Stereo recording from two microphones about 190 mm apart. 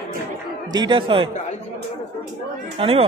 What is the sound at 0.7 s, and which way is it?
Speech, 25° right (ahead or behind).